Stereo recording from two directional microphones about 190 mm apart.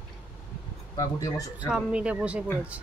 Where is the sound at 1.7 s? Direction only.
5° right (ahead or behind).